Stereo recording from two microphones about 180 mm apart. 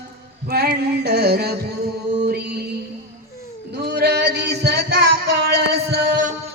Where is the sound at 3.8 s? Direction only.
70° right (ahead or behind); by 6.3 s 50° right (ahead or behind).